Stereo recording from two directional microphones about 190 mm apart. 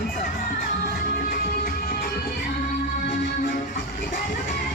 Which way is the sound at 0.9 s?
50° left (ahead or behind).